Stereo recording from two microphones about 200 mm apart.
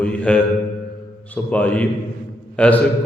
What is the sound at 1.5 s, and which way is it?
A man's voice, 5° left (ahead or behind).